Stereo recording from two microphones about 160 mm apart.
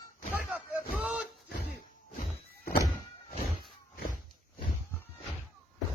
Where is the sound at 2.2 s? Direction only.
70° left (ahead or behind).